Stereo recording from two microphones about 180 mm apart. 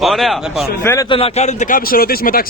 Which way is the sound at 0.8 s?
15° left (ahead or behind).